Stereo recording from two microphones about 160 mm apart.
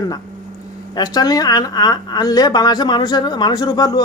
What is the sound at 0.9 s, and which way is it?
A woman's voice, 25° left (ahead or behind).